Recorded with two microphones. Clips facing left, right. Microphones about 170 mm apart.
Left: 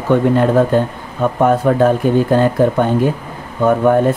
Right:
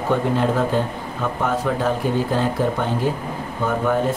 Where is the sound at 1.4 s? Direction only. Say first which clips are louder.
Left 10 dB; 55° left (ahead or behind).